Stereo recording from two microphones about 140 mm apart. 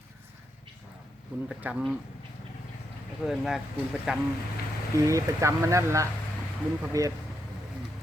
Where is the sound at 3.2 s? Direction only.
5° right (ahead or behind).